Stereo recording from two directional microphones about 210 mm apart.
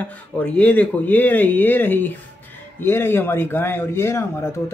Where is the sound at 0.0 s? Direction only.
5° left (ahead or behind).